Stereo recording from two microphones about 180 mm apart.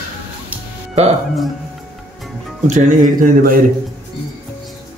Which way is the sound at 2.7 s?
45° right (ahead or behind).